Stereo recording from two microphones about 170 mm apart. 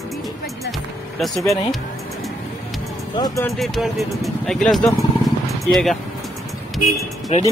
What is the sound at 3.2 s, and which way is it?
Speech, 15° left (ahead or behind).